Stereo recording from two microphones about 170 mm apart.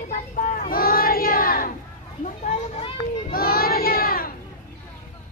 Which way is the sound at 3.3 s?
60° left (ahead or behind).